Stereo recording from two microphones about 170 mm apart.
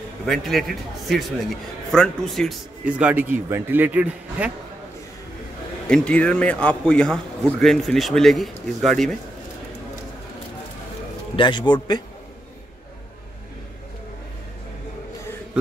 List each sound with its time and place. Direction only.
0.3 s a man's voice: centre (ahead or behind)
5.9 s a man's voice: 5° left (ahead or behind)
11.3 s a man's voice: 30° left (ahead or behind)